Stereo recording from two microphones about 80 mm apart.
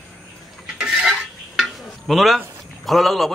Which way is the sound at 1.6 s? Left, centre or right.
Centre.